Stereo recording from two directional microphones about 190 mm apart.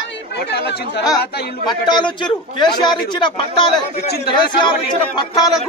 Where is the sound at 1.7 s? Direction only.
25° left (ahead or behind).